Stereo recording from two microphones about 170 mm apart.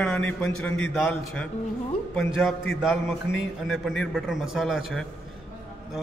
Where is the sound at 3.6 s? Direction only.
Centre (ahead or behind).